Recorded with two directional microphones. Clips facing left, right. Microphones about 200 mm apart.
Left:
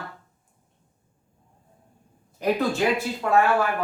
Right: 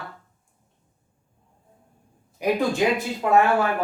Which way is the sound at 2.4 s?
15° right (ahead or behind).